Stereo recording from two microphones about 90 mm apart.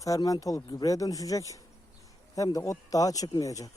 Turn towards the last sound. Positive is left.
turn(degrees=40)  # may be behind; listen again after turning